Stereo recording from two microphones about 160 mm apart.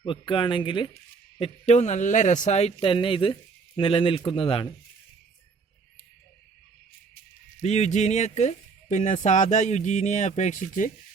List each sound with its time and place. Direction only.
0.0 s speech: 30° left (ahead or behind)
1.4 s speech: 45° left (ahead or behind)
7.6 s speech: 45° left (ahead or behind)